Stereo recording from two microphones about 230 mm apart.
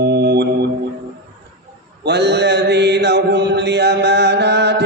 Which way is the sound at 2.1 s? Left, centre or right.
Right.